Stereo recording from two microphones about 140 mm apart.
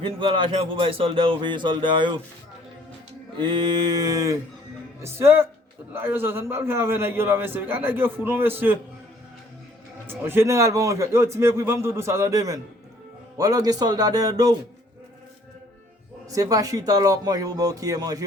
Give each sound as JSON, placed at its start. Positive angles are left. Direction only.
{"t": 0.0, "sound": "speech", "side_deg": -35}
{"t": 3.3, "sound": "a man's voice", "side_deg": -35}
{"t": 10.1, "sound": "a man's voice", "side_deg": -15}
{"t": 16.3, "sound": "a man's voice", "side_deg": -25}